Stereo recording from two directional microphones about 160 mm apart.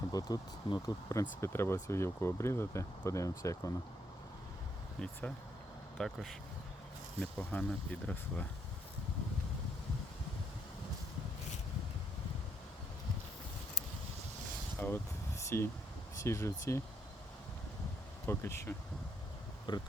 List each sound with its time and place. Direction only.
0.1 s speech: 25° left (ahead or behind)
6.0 s speech: centre (ahead or behind)
14.8 s speech: 10° left (ahead or behind)
18.3 s speech: 15° left (ahead or behind)
19.7 s speech: 30° left (ahead or behind)